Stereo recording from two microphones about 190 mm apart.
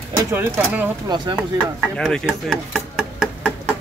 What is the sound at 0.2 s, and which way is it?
Speech, 15° right (ahead or behind).